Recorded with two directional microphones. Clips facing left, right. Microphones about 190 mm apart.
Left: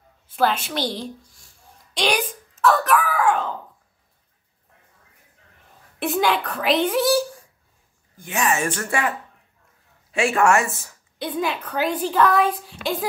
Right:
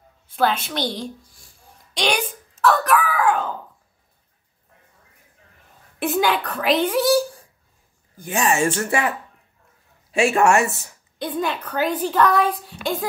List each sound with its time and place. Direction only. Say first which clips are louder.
0.4 s a woman's voice: even; 5° left (ahead or behind)
5.9 s a woman's voice: right 1 dB; centre (ahead or behind)
8.2 s speech: right 3 dB; 30° right (ahead or behind)
10.1 s speech: right 2 dB; 25° right (ahead or behind)
11.1 s a woman's voice: even; centre (ahead or behind)